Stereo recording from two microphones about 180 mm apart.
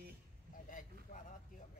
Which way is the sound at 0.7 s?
50° left (ahead or behind).